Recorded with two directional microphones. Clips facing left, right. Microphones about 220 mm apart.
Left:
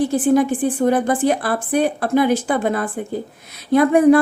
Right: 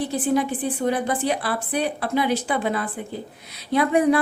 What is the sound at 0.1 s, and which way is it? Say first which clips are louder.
A woman's voice: left 6 dB; 50° left (ahead or behind).